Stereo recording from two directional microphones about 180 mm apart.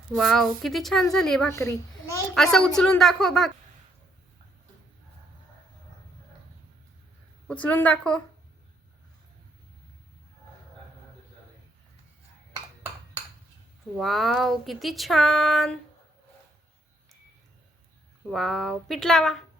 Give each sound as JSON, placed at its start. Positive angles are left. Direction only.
{"t": 0.2, "sound": "speech", "side_deg": 0}
{"t": 1.5, "sound": "a woman's voice", "side_deg": 15}
{"t": 2.3, "sound": "speech", "side_deg": 5}
{"t": 7.4, "sound": "a woman's voice", "side_deg": 5}
{"t": 13.9, "sound": "speech", "side_deg": 0}
{"t": 18.3, "sound": "speech", "side_deg": 0}